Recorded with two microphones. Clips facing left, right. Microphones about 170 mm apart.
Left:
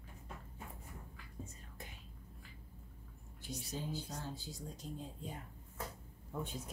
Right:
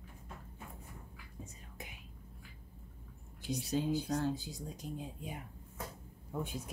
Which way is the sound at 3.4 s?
75° right (ahead or behind).